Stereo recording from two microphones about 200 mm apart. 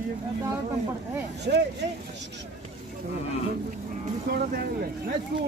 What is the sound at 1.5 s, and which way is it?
Speech, 55° right (ahead or behind).